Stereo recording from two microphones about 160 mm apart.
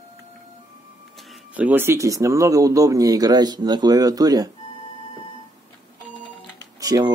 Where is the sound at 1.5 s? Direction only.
10° right (ahead or behind).